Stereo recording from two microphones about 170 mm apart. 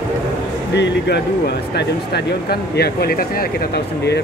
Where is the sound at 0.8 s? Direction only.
90° left.